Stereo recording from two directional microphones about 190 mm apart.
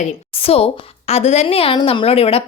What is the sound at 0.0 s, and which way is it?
A woman's voice, 30° left (ahead or behind).